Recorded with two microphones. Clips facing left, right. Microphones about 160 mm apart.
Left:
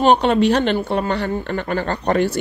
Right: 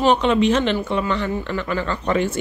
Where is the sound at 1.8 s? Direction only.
40° left (ahead or behind).